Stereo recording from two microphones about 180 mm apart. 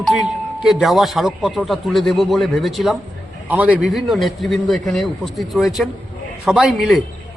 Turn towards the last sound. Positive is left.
turn(degrees=0)  # may be behind; listen again after turning